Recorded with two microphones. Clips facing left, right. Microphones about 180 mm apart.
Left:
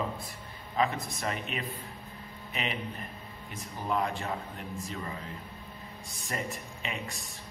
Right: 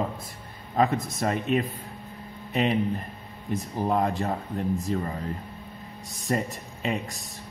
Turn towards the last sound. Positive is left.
turn(degrees=-40)  # may be behind; listen again after turning